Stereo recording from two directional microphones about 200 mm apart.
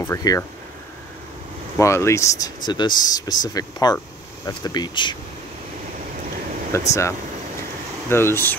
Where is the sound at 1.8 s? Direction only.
15° left (ahead or behind).